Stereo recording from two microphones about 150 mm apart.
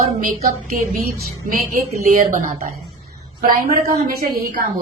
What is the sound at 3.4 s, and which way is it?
Speech, 75° right (ahead or behind).